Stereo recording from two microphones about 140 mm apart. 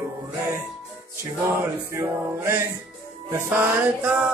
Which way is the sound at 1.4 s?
20° right (ahead or behind).